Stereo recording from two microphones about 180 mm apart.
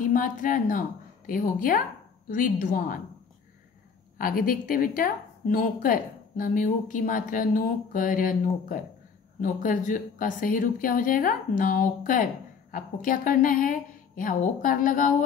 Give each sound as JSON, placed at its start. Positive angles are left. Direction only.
{"t": 0.0, "sound": "a woman's voice", "side_deg": 50}
{"t": 4.2, "sound": "a woman's voice", "side_deg": 50}